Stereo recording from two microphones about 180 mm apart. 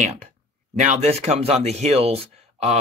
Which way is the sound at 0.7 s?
40° right (ahead or behind).